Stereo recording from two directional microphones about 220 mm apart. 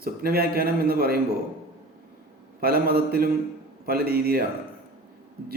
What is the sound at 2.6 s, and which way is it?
A man's voice, 45° right (ahead or behind).